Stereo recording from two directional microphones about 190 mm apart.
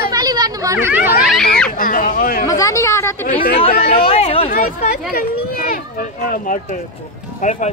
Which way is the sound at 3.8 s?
30° left (ahead or behind).